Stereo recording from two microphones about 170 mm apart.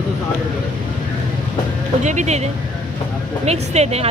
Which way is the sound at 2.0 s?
45° right (ahead or behind).